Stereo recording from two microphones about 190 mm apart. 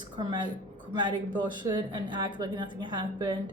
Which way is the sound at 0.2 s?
25° right (ahead or behind).